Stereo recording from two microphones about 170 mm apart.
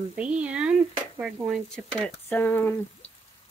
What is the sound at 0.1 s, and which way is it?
Speech, 5° right (ahead or behind).